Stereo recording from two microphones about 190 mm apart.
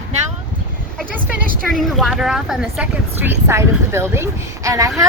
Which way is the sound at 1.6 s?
Centre (ahead or behind).